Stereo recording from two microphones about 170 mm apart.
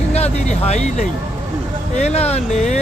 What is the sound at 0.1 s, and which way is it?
Vehicle, 40° left (ahead or behind).